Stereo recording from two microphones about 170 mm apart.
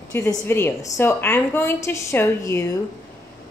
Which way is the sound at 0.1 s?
15° left (ahead or behind).